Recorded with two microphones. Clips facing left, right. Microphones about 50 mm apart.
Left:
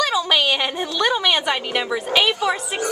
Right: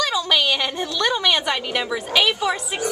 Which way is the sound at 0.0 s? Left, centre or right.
Centre.